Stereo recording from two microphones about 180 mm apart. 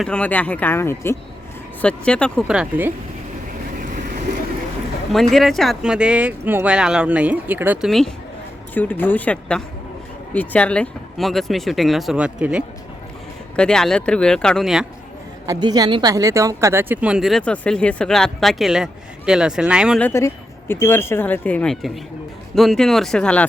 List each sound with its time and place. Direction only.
0.0 s speech: 5° left (ahead or behind)
2.5 s speech: 5° right (ahead or behind)
5.3 s speech: centre (ahead or behind)
15.4 s speech: 20° right (ahead or behind); by 20.0 s 5° right (ahead or behind)
20.0 s speech: 15° left (ahead or behind)